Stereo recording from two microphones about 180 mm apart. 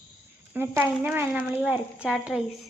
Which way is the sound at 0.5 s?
10° right (ahead or behind).